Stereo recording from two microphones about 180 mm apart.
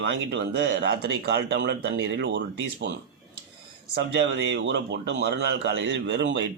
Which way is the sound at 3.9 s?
65° right (ahead or behind).